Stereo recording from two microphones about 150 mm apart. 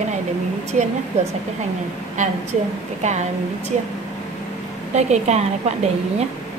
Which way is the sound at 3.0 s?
50° right (ahead or behind).